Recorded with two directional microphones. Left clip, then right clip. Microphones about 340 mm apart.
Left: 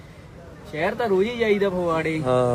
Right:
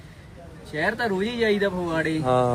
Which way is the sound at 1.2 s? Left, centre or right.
Centre.